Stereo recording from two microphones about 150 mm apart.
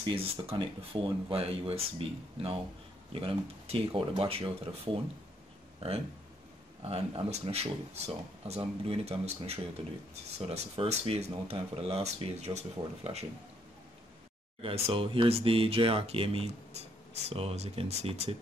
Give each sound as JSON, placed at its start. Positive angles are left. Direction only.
{"t": 0.0, "sound": "speech", "side_deg": -35}
{"t": 6.9, "sound": "speech", "side_deg": -45}
{"t": 14.6, "sound": "speech", "side_deg": -35}